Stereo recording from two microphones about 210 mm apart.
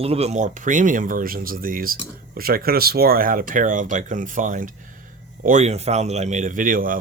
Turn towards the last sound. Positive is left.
turn(degrees=-40)  # may be behind; listen again after turning